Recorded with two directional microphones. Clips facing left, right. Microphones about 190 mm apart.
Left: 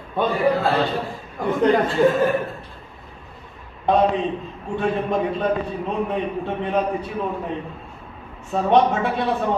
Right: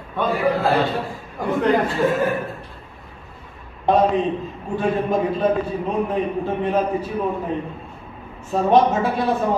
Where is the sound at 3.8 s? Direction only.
Centre (ahead or behind).